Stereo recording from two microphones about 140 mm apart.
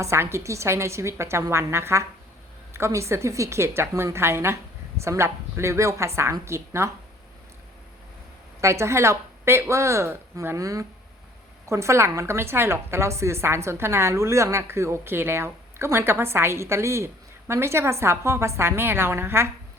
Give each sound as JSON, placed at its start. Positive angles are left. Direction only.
{"t": 0.0, "sound": "a woman's voice", "side_deg": -20}
{"t": 8.6, "sound": "a woman's voice", "side_deg": -20}